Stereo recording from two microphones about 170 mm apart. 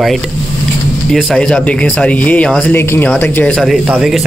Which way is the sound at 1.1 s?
Centre (ahead or behind).